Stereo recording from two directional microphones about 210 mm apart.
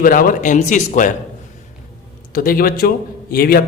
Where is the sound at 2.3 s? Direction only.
45° left (ahead or behind).